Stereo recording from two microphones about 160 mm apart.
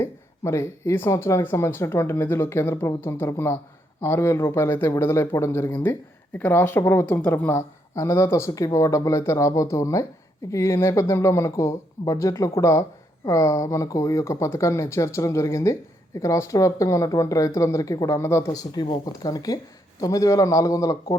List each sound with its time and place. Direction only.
0.0 s speech: 15° left (ahead or behind)